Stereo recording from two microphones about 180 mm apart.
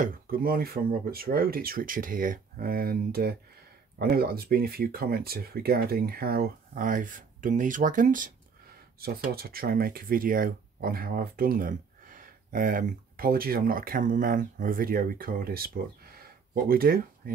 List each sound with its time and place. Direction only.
0.0 s speech: 55° right (ahead or behind)
9.3 s speech: 55° right (ahead or behind)
16.2 s a sound: 55° right (ahead or behind)